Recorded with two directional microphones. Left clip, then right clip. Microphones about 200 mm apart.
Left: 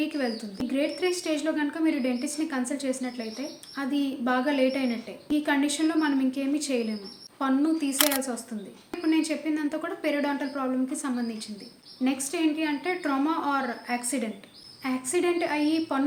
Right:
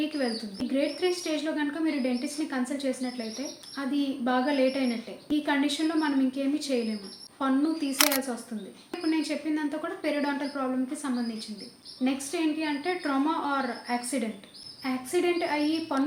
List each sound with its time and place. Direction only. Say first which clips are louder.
0.2 s speech: even; 10° left (ahead or behind)